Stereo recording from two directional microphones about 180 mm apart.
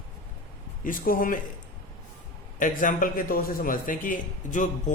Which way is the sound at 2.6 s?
50° left (ahead or behind).